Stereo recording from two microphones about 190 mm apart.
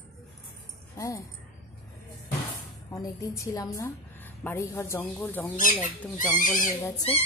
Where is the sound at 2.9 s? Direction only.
15° left (ahead or behind).